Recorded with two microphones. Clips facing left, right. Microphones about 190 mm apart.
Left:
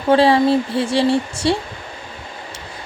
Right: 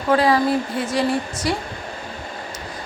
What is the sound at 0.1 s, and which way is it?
Speech, 30° left (ahead or behind).